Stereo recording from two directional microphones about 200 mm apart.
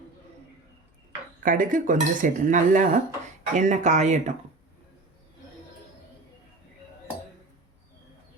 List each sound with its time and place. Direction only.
1.4 s speech: 40° right (ahead or behind)